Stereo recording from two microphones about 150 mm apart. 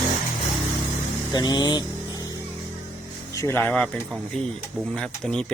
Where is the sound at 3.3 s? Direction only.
15° left (ahead or behind).